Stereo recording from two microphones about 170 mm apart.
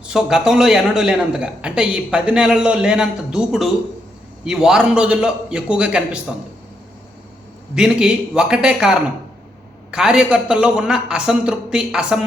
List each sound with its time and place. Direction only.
0.1 s a man's voice: 5° right (ahead or behind)
7.8 s a man's voice: 5° right (ahead or behind)